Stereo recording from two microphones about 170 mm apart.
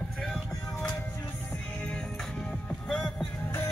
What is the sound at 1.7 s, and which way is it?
Music, 5° left (ahead or behind).